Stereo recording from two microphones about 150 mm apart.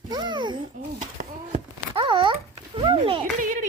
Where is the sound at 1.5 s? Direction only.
35° right (ahead or behind).